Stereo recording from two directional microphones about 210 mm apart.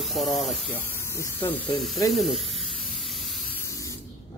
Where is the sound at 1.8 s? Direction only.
Centre (ahead or behind).